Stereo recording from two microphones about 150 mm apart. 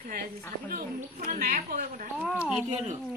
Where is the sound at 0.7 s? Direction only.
70° right (ahead or behind).